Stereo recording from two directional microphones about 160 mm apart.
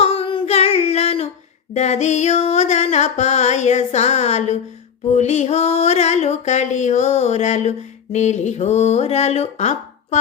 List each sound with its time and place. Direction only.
0.0 s child singing: 35° left (ahead or behind)
1.7 s music: 45° left (ahead or behind)